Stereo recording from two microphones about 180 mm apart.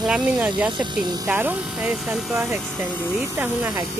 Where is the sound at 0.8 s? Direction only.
25° right (ahead or behind).